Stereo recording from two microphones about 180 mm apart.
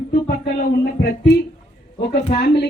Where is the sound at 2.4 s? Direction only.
70° left (ahead or behind).